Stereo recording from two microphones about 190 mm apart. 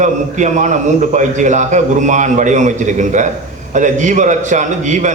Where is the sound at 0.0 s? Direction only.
40° right (ahead or behind).